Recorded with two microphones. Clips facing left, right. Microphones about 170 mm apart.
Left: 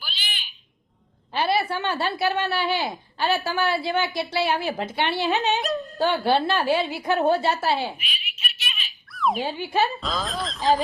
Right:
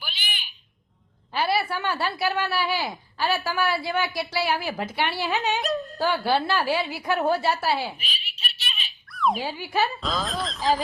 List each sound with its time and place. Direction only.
0.0 s a sound: 10° right (ahead or behind)
1.3 s speech: 25° left (ahead or behind)
7.9 s baby laughter: 35° right (ahead or behind)
9.1 s a sound: centre (ahead or behind)
9.4 s speech: 20° left (ahead or behind)
10.0 s speech: centre (ahead or behind)